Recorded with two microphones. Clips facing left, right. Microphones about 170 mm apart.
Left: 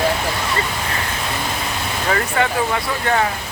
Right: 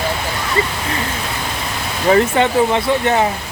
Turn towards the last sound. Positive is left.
turn(degrees=-25)  # may be behind; listen again after turning